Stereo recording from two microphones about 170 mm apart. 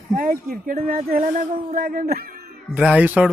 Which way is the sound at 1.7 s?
55° right (ahead or behind).